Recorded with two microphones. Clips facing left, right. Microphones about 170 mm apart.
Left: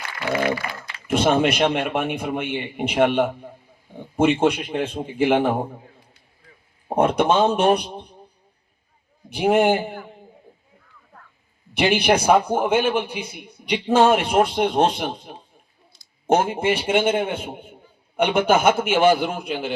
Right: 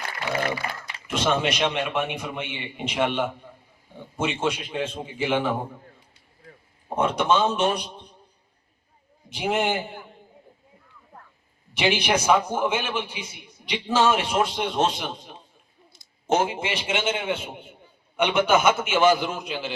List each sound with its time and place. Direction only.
1.0 s a man's voice: 55° left (ahead or behind)
6.8 s a man's voice: 55° left (ahead or behind)
9.3 s a man's voice: 55° left (ahead or behind)
11.8 s a man's voice: 60° left (ahead or behind)